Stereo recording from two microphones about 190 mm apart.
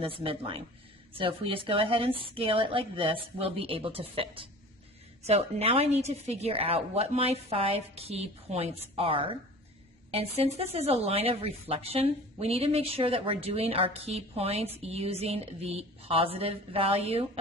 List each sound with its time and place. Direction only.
0.0 s a woman's voice: 30° right (ahead or behind)